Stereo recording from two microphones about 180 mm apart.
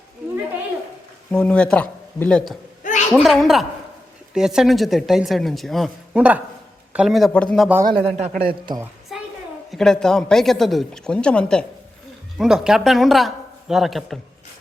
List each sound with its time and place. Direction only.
1.3 s speech: 5° left (ahead or behind)
2.8 s a sound: 40° left (ahead or behind)
3.2 s speech: centre (ahead or behind)
7.9 s a man's voice: 30° right (ahead or behind)
8.3 s a man's voice: 55° right (ahead or behind)
9.1 s a sound: centre (ahead or behind)
9.7 s speech: 5° left (ahead or behind)